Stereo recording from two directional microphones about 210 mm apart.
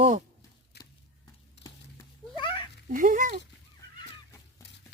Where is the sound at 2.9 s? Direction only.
40° right (ahead or behind).